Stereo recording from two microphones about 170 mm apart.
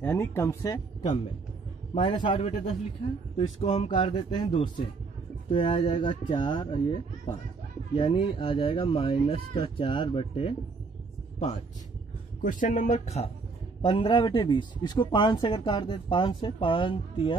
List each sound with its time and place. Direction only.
0.0 s speech: 15° left (ahead or behind)
2.0 s speech: 30° left (ahead or behind)
12.4 s speech: 50° left (ahead or behind); by 17.4 s 30° left (ahead or behind)